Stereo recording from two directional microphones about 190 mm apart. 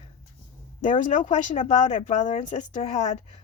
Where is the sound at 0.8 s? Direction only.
40° left (ahead or behind).